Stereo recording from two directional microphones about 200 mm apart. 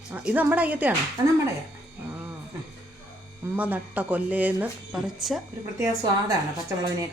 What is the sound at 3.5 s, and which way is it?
Speech, 5° right (ahead or behind).